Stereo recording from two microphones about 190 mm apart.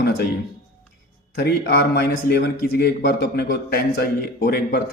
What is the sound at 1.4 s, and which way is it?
A man's voice, 55° left (ahead or behind).